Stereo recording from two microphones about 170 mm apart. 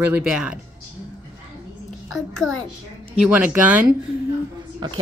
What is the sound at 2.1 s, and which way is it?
Speech, centre (ahead or behind).